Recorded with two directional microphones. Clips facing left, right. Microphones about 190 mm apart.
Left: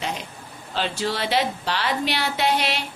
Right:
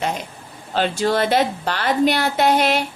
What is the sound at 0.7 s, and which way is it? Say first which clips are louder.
A woman's voice: right 7 dB; 50° right (ahead or behind).